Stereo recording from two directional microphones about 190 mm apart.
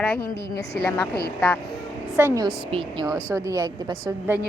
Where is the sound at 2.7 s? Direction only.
25° right (ahead or behind); by 4.4 s 10° right (ahead or behind).